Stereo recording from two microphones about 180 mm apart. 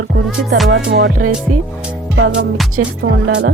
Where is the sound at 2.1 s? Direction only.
90° right.